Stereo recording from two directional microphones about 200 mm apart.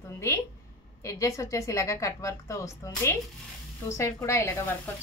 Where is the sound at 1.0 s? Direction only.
15° left (ahead or behind).